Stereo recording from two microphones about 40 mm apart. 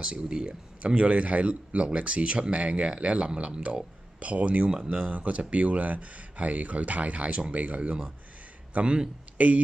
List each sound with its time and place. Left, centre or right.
0.0 s speech: right
8.8 s speech: right
9.4 s speech: right